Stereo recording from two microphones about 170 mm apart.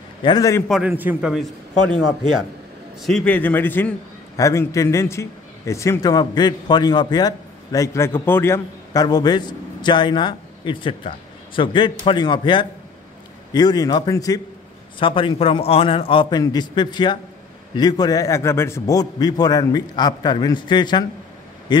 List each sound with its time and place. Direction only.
0.2 s a man's voice: 25° left (ahead or behind)
0.7 s a man's voice: 5° right (ahead or behind); by 21.0 s 25° left (ahead or behind)